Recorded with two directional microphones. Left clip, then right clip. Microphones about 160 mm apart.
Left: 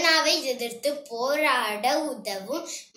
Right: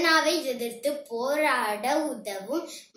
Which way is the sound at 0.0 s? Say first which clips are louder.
Left 1 dB; 15° right (ahead or behind).